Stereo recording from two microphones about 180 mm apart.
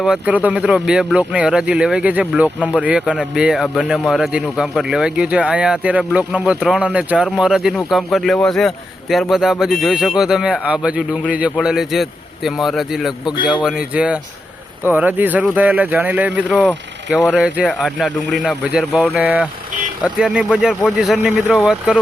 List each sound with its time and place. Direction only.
0.0 s speech: 5° right (ahead or behind)
13.2 s speech: 25° left (ahead or behind)
13.6 s speech: 5° right (ahead or behind)